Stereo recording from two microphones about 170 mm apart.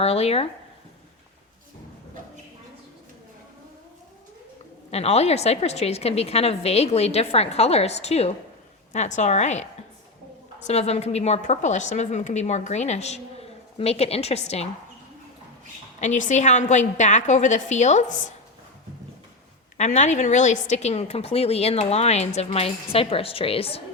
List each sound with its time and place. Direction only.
0.0 s a woman's voice: 35° left (ahead or behind)
4.9 s a woman's voice: 40° left (ahead or behind)
16.0 s a woman's voice: 45° left (ahead or behind)
19.7 s a woman's voice: 40° left (ahead or behind)